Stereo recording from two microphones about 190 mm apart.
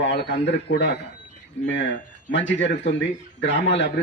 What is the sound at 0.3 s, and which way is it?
Speech, 65° left (ahead or behind).